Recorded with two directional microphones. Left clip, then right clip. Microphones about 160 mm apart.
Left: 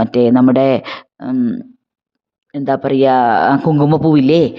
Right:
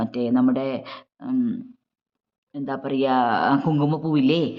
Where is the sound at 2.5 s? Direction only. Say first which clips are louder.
Left 12 dB; 55° left (ahead or behind).